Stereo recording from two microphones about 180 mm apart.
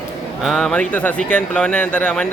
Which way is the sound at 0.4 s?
Centre (ahead or behind).